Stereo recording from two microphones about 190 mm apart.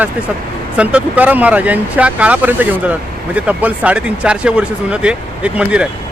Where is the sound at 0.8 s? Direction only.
5° right (ahead or behind).